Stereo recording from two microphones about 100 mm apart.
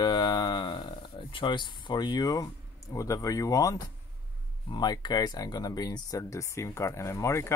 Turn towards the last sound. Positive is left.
turn(degrees=30)  # may be behind; listen again after turning